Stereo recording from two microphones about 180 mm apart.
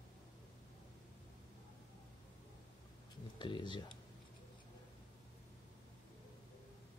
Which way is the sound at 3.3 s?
25° left (ahead or behind).